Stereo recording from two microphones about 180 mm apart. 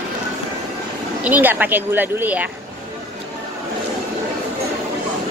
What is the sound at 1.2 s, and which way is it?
Speech, 10° right (ahead or behind).